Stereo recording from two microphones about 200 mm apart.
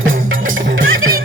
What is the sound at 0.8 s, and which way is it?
Music, 80° right.